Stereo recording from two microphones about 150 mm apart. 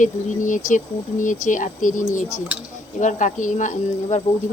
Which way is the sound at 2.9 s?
55° left (ahead or behind).